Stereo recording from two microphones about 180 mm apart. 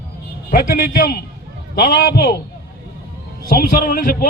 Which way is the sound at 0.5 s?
55° left (ahead or behind).